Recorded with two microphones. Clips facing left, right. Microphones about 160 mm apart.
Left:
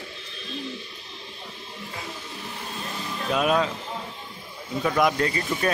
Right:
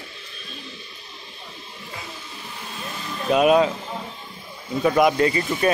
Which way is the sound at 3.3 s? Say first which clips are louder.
Right 6 dB; 10° right (ahead or behind).